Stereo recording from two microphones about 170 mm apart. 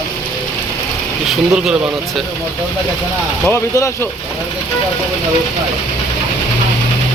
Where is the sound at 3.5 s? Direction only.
15° left (ahead or behind).